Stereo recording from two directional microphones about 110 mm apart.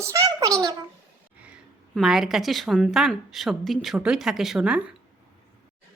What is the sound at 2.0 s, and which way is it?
A woman's voice, 5° right (ahead or behind).